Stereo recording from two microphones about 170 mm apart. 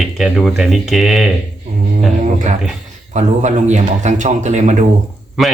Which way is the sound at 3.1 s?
45° right (ahead or behind).